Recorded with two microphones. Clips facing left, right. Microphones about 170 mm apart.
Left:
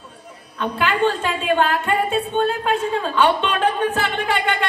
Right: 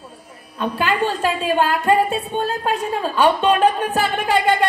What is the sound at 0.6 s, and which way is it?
A woman's voice, 40° right (ahead or behind).